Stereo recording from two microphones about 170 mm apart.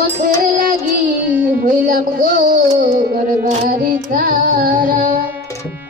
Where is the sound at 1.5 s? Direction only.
55° right (ahead or behind).